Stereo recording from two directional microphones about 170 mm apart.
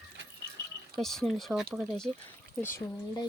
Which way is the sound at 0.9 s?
Centre (ahead or behind).